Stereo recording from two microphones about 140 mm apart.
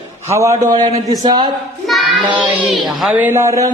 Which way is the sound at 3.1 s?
15° right (ahead or behind).